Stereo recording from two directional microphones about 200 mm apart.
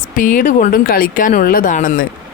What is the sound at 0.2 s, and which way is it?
Speech, 40° left (ahead or behind).